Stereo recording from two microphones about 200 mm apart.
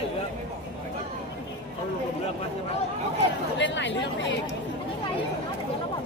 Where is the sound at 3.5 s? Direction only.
65° left (ahead or behind).